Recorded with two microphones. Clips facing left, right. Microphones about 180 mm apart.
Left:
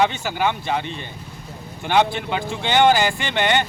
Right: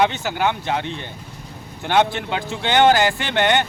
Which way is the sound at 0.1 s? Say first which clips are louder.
Right 1 dB; 10° left (ahead or behind).